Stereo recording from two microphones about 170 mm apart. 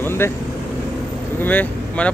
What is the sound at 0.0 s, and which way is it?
Vehicle, 15° left (ahead or behind).